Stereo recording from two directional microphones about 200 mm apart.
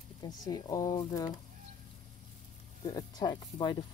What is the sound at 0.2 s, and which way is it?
Speech, 20° left (ahead or behind).